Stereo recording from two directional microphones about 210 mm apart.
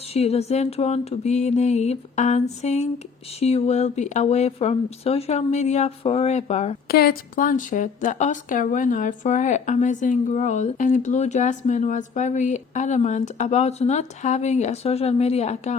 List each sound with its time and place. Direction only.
0.1 s a woman's voice: 30° left (ahead or behind)
6.8 s a woman's voice: 45° left (ahead or behind); by 15.7 s 30° left (ahead or behind)